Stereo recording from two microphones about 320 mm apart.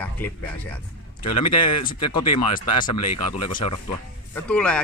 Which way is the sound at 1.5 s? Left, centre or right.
Left.